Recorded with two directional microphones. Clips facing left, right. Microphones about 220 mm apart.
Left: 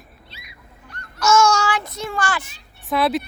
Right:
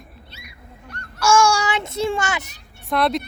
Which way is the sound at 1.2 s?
10° right (ahead or behind).